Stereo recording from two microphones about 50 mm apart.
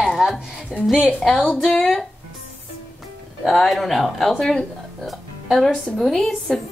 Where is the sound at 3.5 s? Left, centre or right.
Centre.